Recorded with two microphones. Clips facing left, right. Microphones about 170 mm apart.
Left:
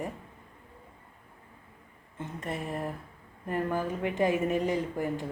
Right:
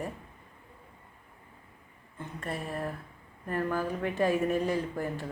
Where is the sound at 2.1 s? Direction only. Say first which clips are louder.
Left 1 dB; 20° left (ahead or behind).